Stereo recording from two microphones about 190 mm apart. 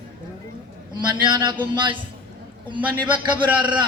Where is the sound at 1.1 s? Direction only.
25° right (ahead or behind).